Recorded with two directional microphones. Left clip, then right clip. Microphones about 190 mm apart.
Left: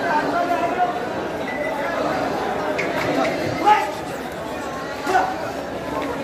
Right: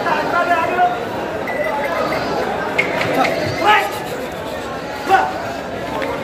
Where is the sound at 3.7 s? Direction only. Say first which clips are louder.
Right 2 dB; 10° right (ahead or behind).